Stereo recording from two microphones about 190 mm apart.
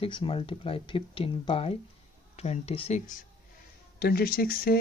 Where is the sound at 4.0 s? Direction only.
55° left (ahead or behind).